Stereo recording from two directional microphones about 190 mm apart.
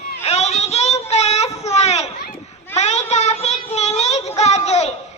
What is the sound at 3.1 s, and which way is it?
Child singing, 35° left (ahead or behind).